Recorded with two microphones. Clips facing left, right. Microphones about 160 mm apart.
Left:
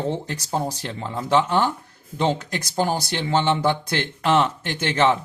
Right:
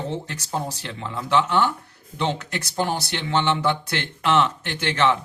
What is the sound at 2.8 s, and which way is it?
Speech, 40° left (ahead or behind).